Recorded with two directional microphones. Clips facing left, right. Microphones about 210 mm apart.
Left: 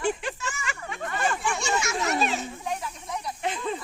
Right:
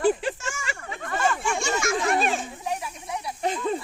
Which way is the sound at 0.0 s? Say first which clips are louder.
Right 5 dB; 40° right (ahead or behind).